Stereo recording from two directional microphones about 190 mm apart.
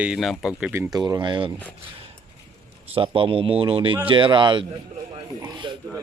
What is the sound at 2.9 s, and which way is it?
A man's voice, 30° right (ahead or behind).